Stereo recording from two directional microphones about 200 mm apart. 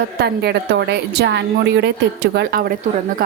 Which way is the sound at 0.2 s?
55° right (ahead or behind).